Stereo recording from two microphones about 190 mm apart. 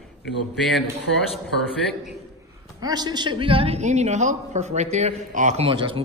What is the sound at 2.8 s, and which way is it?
A man's voice, 20° right (ahead or behind).